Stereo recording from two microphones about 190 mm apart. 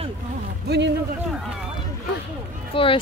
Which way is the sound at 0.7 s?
60° right (ahead or behind).